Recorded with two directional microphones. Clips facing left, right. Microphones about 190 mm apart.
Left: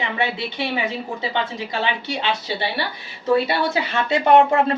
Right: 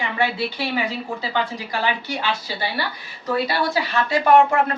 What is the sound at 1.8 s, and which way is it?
Speech, 20° left (ahead or behind).